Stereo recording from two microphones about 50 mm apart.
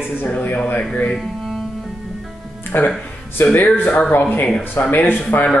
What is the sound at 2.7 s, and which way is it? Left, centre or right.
A man's voice, left.